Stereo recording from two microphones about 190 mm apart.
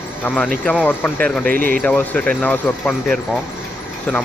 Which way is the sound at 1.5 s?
50° right (ahead or behind).